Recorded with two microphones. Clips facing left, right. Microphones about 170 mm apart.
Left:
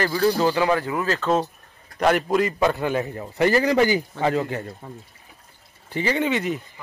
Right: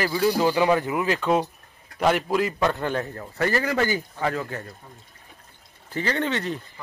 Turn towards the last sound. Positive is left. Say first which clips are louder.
# left 3 dB
turn(degrees=10)  # may be behind; listen again after turning